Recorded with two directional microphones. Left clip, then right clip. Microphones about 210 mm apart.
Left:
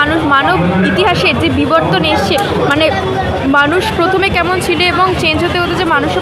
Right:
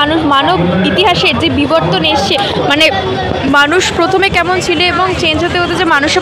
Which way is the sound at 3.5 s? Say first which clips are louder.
Right 2 dB; 15° right (ahead or behind).